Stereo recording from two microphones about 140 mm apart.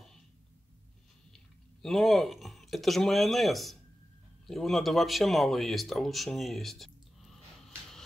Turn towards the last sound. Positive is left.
turn(degrees=0)  # may be behind; listen again after turning